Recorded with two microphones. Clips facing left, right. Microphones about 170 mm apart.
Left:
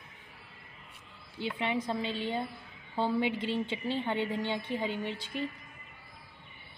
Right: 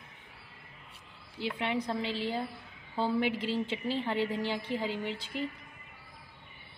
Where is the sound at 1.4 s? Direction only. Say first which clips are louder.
Even; centre (ahead or behind).